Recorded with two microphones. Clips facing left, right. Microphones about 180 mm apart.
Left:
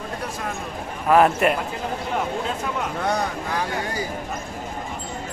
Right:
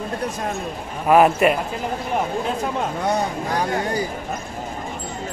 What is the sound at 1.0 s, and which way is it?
Speech, 10° right (ahead or behind).